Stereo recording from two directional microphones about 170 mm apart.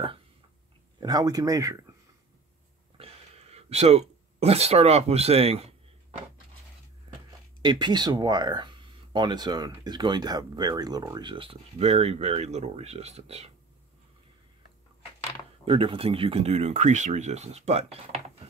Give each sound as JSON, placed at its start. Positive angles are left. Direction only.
{"t": 0.9, "sound": "speech", "side_deg": -20}
{"t": 3.0, "sound": "a sound", "side_deg": -40}
{"t": 7.6, "sound": "speech", "side_deg": -25}
{"t": 15.6, "sound": "speech", "side_deg": -30}